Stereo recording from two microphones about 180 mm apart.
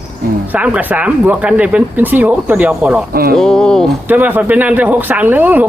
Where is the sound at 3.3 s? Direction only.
5° left (ahead or behind).